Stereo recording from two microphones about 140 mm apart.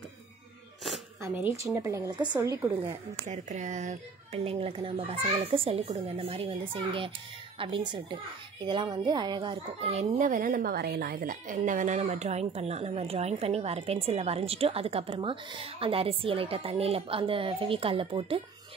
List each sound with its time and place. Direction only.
0.8 s a sound: centre (ahead or behind)
1.7 s a woman's voice: 20° right (ahead or behind)
3.3 s speech: 60° right (ahead or behind)
4.5 s a child's voice: 45° right (ahead or behind)